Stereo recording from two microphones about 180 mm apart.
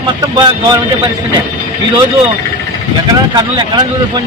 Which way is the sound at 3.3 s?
25° right (ahead or behind).